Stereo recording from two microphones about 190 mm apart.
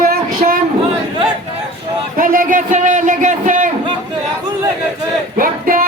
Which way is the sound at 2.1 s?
45° right (ahead or behind).